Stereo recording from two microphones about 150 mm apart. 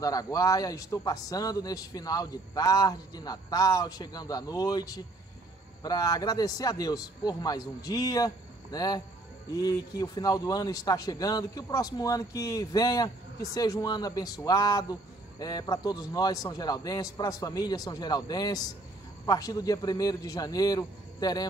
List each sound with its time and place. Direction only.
0.0 s a man's voice: 25° left (ahead or behind)